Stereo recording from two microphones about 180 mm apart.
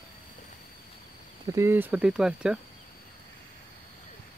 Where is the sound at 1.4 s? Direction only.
15° right (ahead or behind).